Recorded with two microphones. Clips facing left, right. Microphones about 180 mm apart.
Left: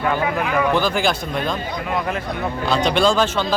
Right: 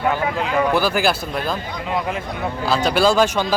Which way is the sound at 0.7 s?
10° right (ahead or behind).